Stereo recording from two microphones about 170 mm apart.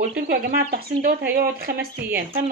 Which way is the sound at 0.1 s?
60° right (ahead or behind).